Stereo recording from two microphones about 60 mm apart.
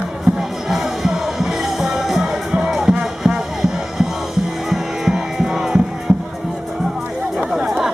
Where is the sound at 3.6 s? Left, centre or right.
Centre.